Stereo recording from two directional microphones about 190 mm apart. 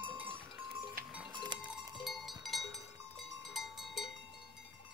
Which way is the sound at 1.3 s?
25° right (ahead or behind).